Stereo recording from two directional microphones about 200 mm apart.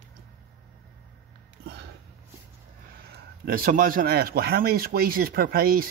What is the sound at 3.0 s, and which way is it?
A man's voice, 50° right (ahead or behind).